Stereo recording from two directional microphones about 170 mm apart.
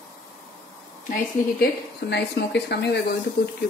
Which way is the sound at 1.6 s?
75° left (ahead or behind).